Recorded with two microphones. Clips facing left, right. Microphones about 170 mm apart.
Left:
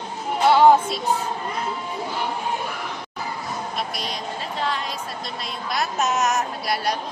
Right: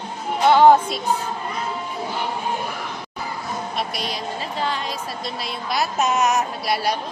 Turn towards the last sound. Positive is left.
turn(degrees=0)  # may be behind; listen again after turning